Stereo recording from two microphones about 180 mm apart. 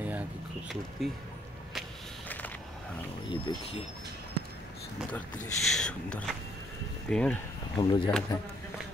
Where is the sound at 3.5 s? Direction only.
25° left (ahead or behind).